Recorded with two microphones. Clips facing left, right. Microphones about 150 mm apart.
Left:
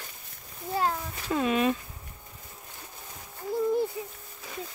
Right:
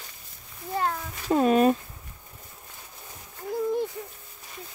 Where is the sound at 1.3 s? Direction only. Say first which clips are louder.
Right 6 dB; 40° right (ahead or behind).